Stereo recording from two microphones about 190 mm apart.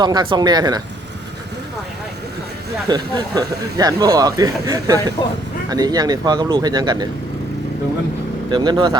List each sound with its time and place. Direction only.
0.0 s speech: 25° right (ahead or behind)
2.9 s speech: 20° right (ahead or behind)
8.4 s speech: 25° right (ahead or behind)